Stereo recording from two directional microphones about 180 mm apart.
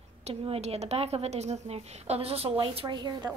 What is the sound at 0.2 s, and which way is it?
A woman's voice, 35° right (ahead or behind).